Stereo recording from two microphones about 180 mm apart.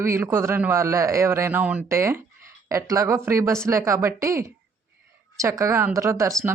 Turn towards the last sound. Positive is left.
turn(degrees=-15)  # may be behind; listen again after turning